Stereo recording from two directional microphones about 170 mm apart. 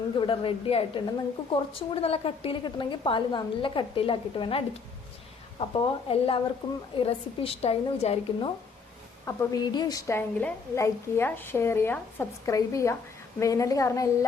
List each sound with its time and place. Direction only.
0.2 s a woman's voice: 30° left (ahead or behind)
9.2 s a woman's voice: 20° left (ahead or behind)